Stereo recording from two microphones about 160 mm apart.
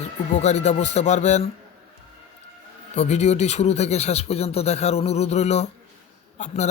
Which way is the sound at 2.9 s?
45° left (ahead or behind).